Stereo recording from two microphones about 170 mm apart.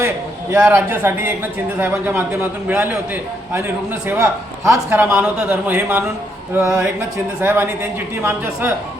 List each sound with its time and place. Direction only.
0.5 s speech: 10° right (ahead or behind)